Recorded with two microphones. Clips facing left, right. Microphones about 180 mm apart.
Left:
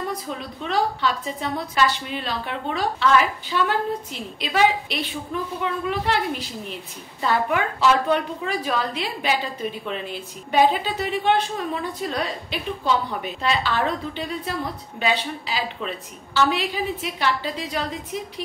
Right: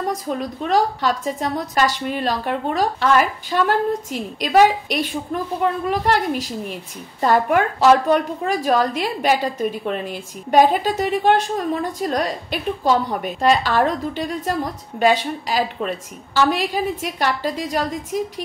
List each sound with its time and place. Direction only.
0.1 s a woman's voice: 45° right (ahead or behind)